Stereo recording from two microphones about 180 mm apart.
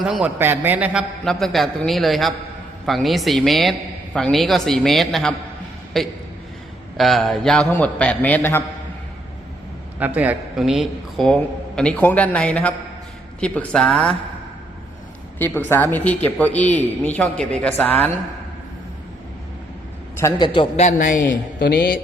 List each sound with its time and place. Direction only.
0.0 s a man's voice: 5° right (ahead or behind)
1.2 s a man's voice: centre (ahead or behind)
10.2 s a man's voice: 5° right (ahead or behind)
15.4 s a man's voice: 10° left (ahead or behind)
20.4 s a man's voice: 30° left (ahead or behind)
20.8 s a man's voice: 50° left (ahead or behind)